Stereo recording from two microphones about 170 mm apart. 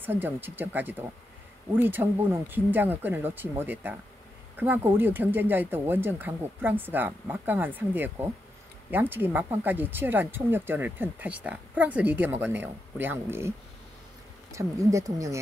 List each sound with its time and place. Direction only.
0.0 s speech: 10° right (ahead or behind)
14.5 s speech: 20° right (ahead or behind)